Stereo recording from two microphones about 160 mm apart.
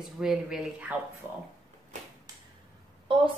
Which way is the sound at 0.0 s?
Centre (ahead or behind).